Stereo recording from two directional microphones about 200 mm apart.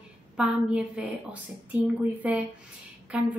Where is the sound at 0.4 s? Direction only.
5° right (ahead or behind).